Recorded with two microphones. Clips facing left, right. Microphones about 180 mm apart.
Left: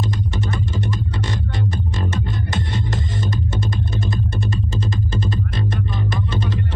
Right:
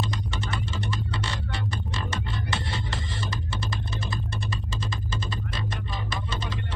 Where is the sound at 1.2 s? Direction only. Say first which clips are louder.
Left 8 dB; 45° left (ahead or behind).